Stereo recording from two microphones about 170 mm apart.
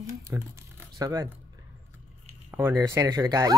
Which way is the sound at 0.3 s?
20° right (ahead or behind).